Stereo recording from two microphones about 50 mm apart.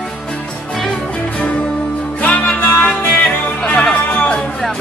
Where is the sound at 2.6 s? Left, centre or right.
Left.